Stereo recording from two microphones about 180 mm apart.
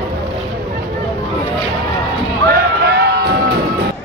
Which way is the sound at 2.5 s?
65° right (ahead or behind).